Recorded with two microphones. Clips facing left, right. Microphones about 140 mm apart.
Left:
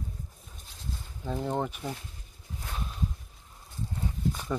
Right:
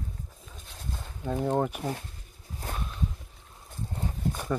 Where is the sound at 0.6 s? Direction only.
60° right (ahead or behind).